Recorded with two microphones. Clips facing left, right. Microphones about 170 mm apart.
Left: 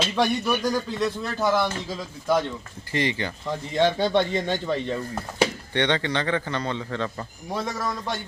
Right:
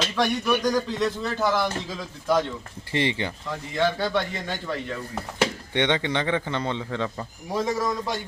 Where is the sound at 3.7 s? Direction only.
25° left (ahead or behind).